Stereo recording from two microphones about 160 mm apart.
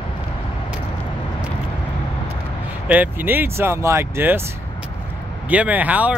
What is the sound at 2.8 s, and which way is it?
Speech, 10° right (ahead or behind).